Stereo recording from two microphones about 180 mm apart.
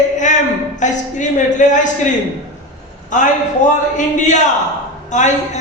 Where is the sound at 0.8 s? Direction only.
45° left (ahead or behind).